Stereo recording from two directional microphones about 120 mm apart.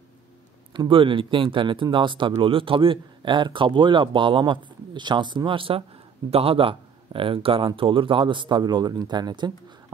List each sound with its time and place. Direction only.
0.7 s speech: 45° right (ahead or behind)